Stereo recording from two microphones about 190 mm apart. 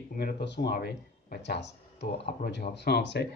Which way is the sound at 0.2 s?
55° left (ahead or behind).